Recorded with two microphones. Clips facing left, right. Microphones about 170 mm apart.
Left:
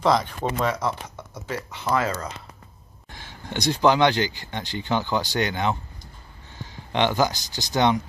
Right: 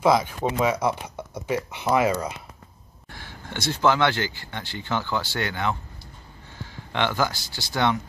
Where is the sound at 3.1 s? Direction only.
20° left (ahead or behind).